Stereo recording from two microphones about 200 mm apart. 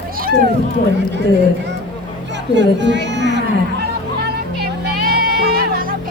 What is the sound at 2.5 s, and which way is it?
Speech, 60° right (ahead or behind).